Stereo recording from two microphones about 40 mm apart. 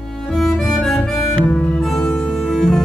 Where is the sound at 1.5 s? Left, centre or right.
Left.